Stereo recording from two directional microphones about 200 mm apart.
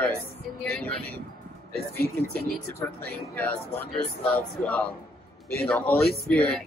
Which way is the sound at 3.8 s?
5° left (ahead or behind).